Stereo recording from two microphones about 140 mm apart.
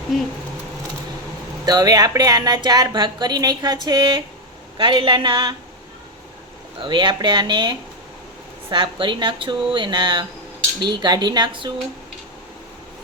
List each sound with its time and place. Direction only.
0.1 s speech: centre (ahead or behind)
1.6 s speech: 25° right (ahead or behind)
6.8 s speech: 35° right (ahead or behind)